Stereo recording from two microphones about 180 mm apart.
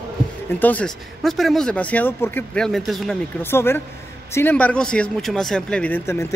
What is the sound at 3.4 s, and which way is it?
Speech, 15° left (ahead or behind).